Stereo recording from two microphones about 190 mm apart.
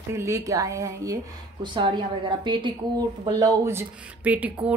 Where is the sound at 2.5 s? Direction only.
25° right (ahead or behind).